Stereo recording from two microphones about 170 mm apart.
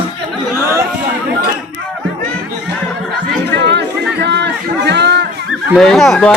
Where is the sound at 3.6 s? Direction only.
80° right.